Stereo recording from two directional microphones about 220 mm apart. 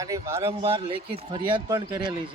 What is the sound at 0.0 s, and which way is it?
Speech, 15° right (ahead or behind).